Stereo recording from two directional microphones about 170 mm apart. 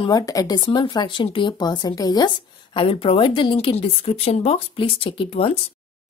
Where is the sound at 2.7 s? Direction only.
35° left (ahead or behind).